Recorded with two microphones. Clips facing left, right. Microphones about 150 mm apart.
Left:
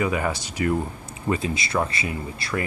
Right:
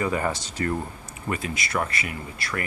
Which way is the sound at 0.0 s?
10° left (ahead or behind).